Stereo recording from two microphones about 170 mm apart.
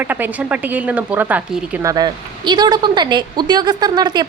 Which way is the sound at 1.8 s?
20° right (ahead or behind).